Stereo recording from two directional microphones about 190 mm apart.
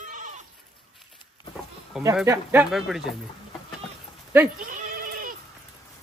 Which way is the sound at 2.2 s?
15° right (ahead or behind).